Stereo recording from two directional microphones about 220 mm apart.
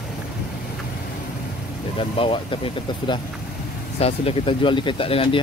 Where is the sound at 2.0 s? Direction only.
25° left (ahead or behind).